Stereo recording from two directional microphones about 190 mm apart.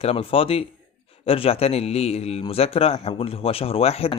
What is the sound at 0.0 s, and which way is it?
A man's voice, 30° left (ahead or behind).